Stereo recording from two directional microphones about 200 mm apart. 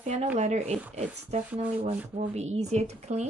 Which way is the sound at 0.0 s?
35° right (ahead or behind).